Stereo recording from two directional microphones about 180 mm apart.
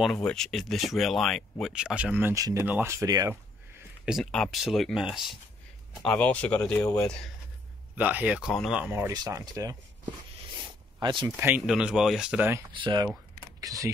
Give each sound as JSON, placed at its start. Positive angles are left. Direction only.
{"t": 0.0, "sound": "speech", "side_deg": 5}
{"t": 4.0, "sound": "speech", "side_deg": 0}
{"t": 7.9, "sound": "speech", "side_deg": -10}
{"t": 11.0, "sound": "speech", "side_deg": -25}
{"t": 11.3, "sound": "speech", "side_deg": -10}
{"t": 12.7, "sound": "speech", "side_deg": -25}